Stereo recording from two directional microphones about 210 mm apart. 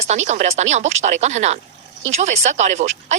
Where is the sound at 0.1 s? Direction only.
35° right (ahead or behind).